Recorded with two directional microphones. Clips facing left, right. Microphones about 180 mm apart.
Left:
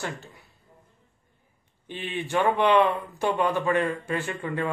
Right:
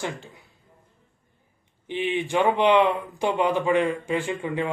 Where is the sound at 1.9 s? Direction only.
15° right (ahead or behind).